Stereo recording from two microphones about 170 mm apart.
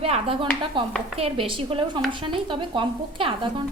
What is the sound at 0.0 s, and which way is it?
A woman's voice, 35° right (ahead or behind).